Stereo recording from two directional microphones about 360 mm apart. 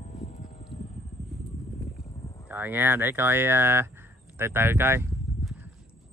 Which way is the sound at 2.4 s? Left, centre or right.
Centre.